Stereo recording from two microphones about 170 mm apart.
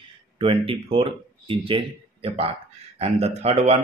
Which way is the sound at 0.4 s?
35° right (ahead or behind).